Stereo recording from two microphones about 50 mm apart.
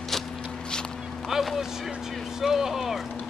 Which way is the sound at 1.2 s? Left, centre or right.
Centre.